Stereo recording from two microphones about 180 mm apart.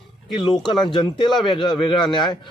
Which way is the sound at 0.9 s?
25° left (ahead or behind).